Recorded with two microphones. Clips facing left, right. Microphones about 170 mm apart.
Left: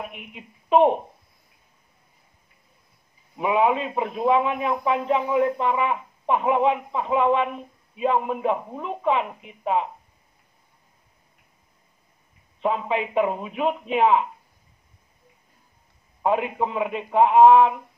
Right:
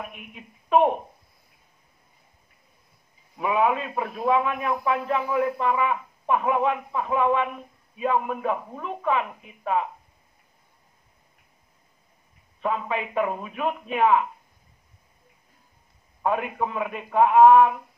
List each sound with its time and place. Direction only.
0.0 s a man's voice: 25° left (ahead or behind)
3.3 s a man's voice: 25° left (ahead or behind)
12.6 s a man's voice: 25° left (ahead or behind)
16.2 s a man's voice: 25° left (ahead or behind)